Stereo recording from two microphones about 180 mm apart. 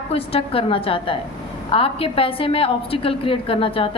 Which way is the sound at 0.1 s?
30° left (ahead or behind).